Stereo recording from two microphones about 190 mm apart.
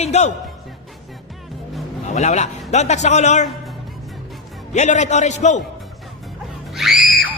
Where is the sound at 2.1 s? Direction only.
35° left (ahead or behind).